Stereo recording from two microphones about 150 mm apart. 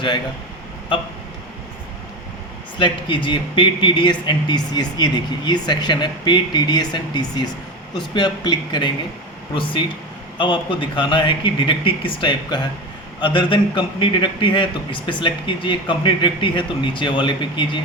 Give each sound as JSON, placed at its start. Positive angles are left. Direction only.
{"t": 2.7, "sound": "a man's voice", "side_deg": 35}
{"t": 10.3, "sound": "speech", "side_deg": 35}